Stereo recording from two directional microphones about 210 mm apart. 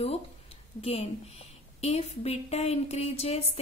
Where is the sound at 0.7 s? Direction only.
30° left (ahead or behind).